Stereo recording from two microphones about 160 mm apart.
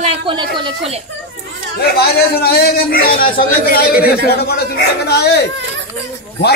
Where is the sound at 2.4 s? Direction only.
80° left.